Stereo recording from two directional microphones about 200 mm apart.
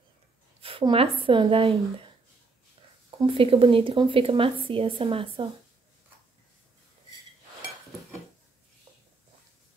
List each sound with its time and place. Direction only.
0.6 s a woman's voice: 25° right (ahead or behind)
3.2 s speech: 25° right (ahead or behind)